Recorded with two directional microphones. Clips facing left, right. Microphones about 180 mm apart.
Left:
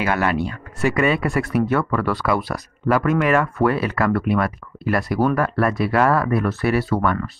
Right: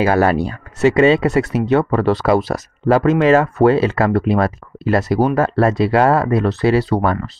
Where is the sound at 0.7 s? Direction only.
25° right (ahead or behind).